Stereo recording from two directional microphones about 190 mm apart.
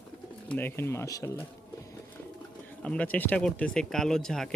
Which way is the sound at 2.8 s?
5° left (ahead or behind).